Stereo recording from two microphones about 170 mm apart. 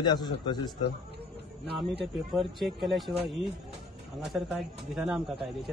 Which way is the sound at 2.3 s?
Centre (ahead or behind).